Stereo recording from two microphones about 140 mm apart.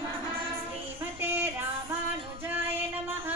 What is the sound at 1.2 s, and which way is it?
Music, 15° right (ahead or behind).